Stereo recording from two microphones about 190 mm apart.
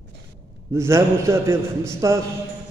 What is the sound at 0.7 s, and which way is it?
A man's voice, 15° right (ahead or behind).